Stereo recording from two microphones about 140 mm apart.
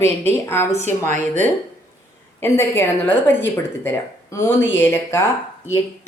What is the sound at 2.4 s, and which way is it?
A woman's voice, 15° left (ahead or behind).